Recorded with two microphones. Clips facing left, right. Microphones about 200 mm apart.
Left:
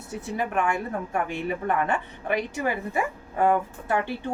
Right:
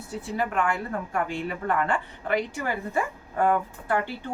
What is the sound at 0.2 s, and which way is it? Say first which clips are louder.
A woman's voice: even; 20° left (ahead or behind).